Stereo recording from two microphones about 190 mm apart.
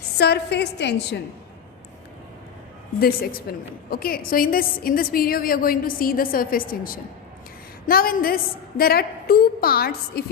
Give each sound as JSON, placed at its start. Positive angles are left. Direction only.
{"t": 0.2, "sound": "a woman's voice", "side_deg": 60}
{"t": 3.0, "sound": "a woman's voice", "side_deg": 50}